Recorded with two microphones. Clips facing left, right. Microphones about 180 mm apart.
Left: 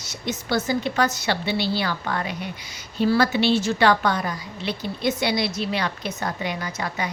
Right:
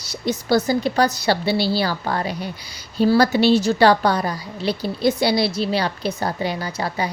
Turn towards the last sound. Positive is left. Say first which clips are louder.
# right 4 dB
turn(degrees=-30)  # may be behind; listen again after turning